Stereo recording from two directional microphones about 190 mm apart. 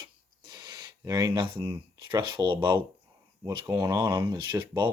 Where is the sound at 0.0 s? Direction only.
20° right (ahead or behind).